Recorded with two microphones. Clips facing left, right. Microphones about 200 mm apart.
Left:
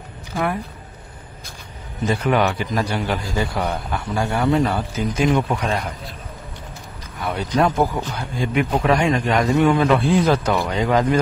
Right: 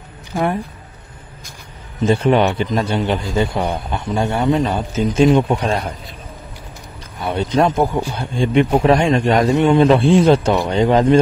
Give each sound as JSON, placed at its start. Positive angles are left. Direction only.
{"t": 2.0, "sound": "a man's voice", "side_deg": -25}
{"t": 7.2, "sound": "a man's voice", "side_deg": -25}